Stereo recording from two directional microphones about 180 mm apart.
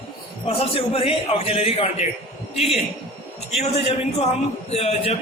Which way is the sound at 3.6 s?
35° left (ahead or behind).